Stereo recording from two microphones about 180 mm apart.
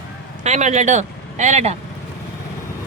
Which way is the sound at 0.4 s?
40° right (ahead or behind).